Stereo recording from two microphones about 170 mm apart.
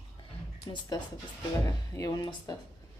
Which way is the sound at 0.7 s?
25° left (ahead or behind).